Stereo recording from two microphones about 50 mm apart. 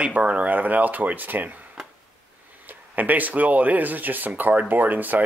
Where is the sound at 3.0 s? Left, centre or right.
Right.